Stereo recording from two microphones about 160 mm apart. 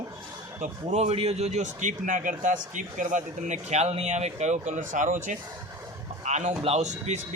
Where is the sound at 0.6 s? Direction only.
45° right (ahead or behind).